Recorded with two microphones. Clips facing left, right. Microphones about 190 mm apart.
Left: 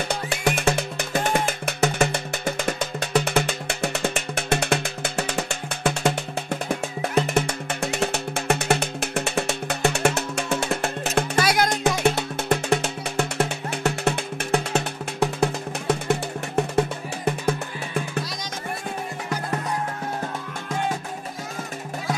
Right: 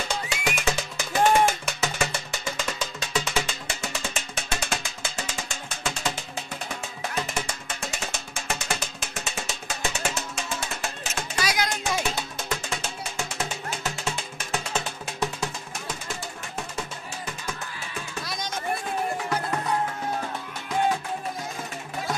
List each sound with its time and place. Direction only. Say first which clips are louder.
0.1 s music: left 5 dB; 60° left (ahead or behind)